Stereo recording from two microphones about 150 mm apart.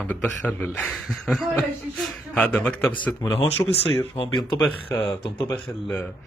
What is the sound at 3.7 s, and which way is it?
Speech, 40° left (ahead or behind).